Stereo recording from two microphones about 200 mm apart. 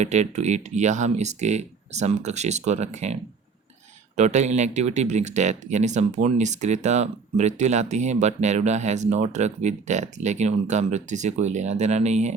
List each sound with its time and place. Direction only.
0.0 s speech: 35° right (ahead or behind)
4.2 s speech: 35° right (ahead or behind)